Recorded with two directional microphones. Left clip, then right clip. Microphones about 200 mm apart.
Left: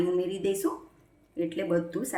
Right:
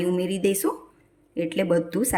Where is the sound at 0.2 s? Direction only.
50° right (ahead or behind).